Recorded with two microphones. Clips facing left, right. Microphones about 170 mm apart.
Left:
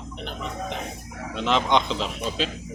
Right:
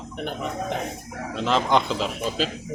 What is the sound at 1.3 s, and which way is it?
Speech, centre (ahead or behind).